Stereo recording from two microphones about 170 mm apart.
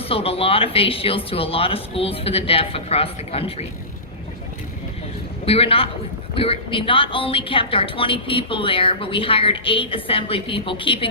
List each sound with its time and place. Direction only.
0.0 s a woman's voice: 35° left (ahead or behind)
5.5 s a woman's voice: 35° left (ahead or behind)